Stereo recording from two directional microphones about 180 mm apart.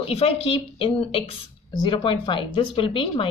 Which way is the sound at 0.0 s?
35° left (ahead or behind).